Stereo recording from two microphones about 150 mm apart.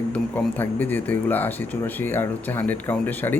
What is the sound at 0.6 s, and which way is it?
A man's voice, 10° left (ahead or behind).